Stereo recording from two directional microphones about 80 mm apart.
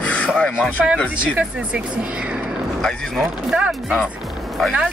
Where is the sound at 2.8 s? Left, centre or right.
Centre.